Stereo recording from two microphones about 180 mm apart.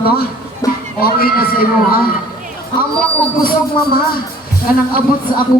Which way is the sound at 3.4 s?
55° left (ahead or behind).